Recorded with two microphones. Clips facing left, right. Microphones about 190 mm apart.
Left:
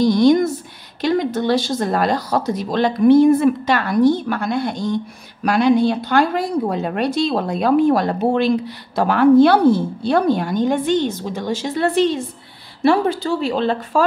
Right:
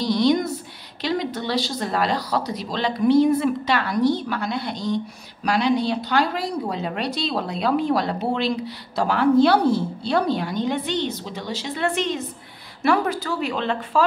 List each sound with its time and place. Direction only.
0.0 s a woman's voice: 50° left (ahead or behind)